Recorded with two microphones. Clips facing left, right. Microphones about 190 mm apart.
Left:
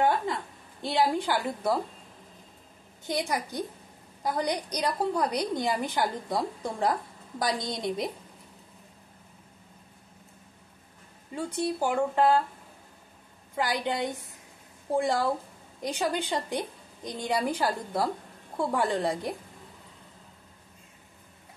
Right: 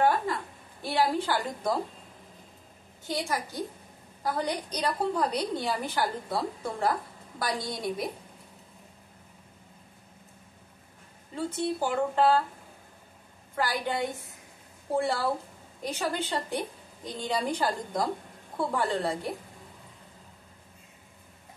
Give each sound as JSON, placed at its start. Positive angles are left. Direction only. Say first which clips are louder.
{"t": 0.8, "sound": "a woman's voice", "louder": "left 1 dB", "side_deg": 15}
{"t": 3.1, "sound": "a woman's voice", "louder": "left 2 dB", "side_deg": 20}
{"t": 11.3, "sound": "a woman's voice", "louder": "even", "side_deg": 10}
{"t": 13.6, "sound": "a woman's voice", "louder": "left 1 dB", "side_deg": 20}